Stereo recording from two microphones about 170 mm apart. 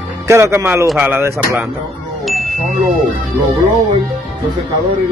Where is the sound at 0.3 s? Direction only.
15° right (ahead or behind).